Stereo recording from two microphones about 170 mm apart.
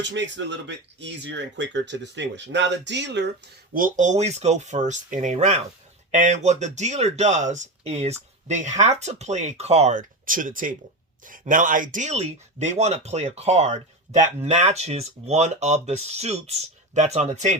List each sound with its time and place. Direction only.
0.0 s speech: 90° right
3.8 s speech: 50° right (ahead or behind)